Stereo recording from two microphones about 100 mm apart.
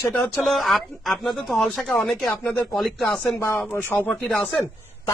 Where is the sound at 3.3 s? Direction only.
20° left (ahead or behind).